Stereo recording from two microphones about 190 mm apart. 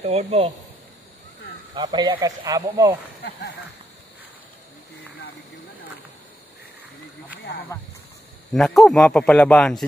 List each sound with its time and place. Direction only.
0.0 s speech: 35° right (ahead or behind)
1.8 s speech: 20° right (ahead or behind)
8.5 s a man's voice: centre (ahead or behind)